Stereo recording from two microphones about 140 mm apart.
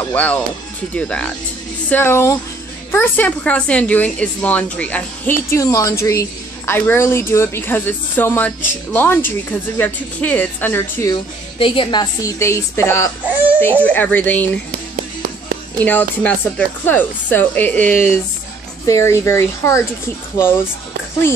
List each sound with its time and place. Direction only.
0.1 s a woman's voice: 10° left (ahead or behind)
11.5 s a woman's voice: 40° left (ahead or behind); by 14.6 s 10° left (ahead or behind)
15.8 s a woman's voice: 10° left (ahead or behind)